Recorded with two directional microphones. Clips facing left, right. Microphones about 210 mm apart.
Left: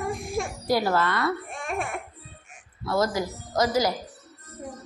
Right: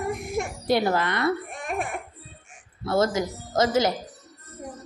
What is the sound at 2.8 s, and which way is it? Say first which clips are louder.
A child's voice: right 2 dB; 25° right (ahead or behind).